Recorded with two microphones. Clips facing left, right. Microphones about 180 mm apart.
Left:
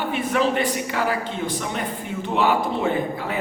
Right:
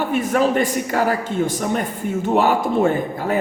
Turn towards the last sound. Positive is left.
turn(degrees=-45)  # may be behind; listen again after turning